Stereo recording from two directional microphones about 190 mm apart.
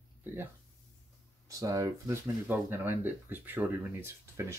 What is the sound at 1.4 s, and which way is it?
Speech, 15° right (ahead or behind).